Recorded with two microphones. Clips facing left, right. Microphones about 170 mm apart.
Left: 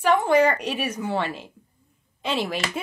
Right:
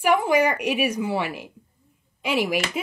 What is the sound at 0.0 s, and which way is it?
Speech, 10° right (ahead or behind).